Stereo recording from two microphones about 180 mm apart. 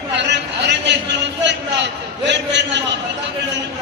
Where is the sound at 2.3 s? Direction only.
75° right (ahead or behind).